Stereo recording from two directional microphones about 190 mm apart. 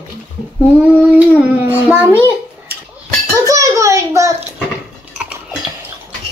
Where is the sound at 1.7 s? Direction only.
10° right (ahead or behind).